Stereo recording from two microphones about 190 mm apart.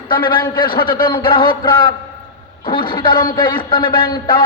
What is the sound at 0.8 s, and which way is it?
Speech, 50° left (ahead or behind).